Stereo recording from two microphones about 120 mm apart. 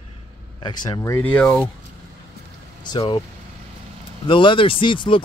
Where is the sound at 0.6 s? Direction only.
35° left (ahead or behind).